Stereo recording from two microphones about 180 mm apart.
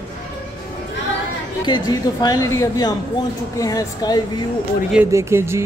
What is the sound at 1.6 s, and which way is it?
A woman's voice, 25° left (ahead or behind).